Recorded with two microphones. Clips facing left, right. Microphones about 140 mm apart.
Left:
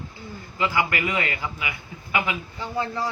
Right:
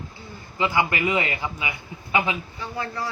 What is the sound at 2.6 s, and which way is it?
Speech, 20° left (ahead or behind).